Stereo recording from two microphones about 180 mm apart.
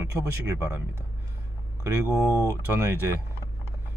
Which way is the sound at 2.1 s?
15° left (ahead or behind).